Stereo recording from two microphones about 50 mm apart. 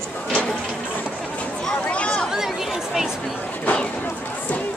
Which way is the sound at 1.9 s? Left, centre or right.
Left.